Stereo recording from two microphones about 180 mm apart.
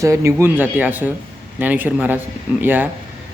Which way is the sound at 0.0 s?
15° right (ahead or behind).